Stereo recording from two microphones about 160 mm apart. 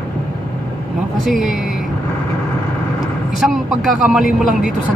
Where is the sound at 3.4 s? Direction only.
Centre (ahead or behind).